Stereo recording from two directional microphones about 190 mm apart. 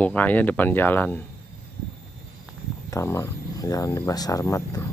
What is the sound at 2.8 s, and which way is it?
Speech, 15° left (ahead or behind).